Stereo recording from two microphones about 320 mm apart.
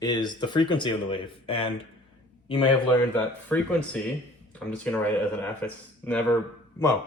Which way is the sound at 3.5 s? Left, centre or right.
Centre.